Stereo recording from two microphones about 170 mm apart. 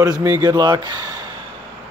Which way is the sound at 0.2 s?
20° right (ahead or behind).